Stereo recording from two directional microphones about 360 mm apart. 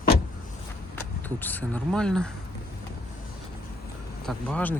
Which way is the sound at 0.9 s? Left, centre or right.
Centre.